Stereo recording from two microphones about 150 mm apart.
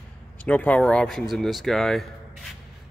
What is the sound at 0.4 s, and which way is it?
Speech, 10° left (ahead or behind).